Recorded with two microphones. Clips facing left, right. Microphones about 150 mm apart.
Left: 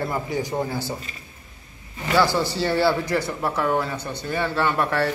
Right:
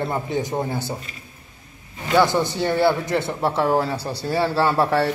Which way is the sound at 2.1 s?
20° right (ahead or behind).